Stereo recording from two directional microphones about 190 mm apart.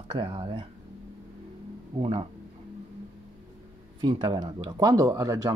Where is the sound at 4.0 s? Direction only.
25° right (ahead or behind).